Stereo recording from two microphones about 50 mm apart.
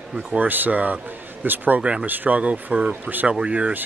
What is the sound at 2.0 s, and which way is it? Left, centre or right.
Speech, right.